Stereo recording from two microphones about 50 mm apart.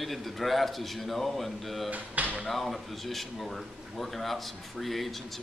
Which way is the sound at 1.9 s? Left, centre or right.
Right.